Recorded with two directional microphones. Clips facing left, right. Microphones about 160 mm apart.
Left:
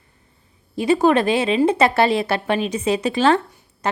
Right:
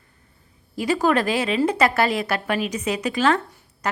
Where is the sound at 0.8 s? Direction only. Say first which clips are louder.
Left 4 dB; 25° left (ahead or behind).